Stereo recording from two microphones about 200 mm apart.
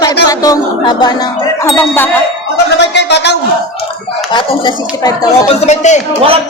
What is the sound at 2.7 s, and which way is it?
Speech, 60° left (ahead or behind).